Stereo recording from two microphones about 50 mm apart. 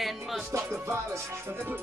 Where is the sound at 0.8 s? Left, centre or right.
Right.